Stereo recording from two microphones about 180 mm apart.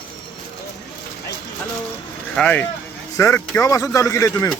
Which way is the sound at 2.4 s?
10° left (ahead or behind).